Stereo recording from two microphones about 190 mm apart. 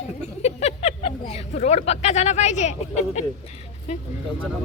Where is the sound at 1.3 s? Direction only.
35° left (ahead or behind).